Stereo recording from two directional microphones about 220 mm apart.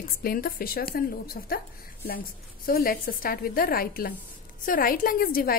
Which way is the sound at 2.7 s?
40° left (ahead or behind).